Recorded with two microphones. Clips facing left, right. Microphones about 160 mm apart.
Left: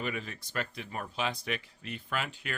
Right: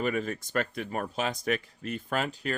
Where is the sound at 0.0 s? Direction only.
45° right (ahead or behind).